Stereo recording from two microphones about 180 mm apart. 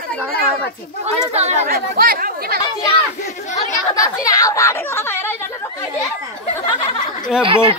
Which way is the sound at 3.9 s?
20° left (ahead or behind).